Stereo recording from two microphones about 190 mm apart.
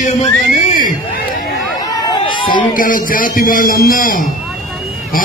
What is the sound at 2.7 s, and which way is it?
Music, 45° left (ahead or behind).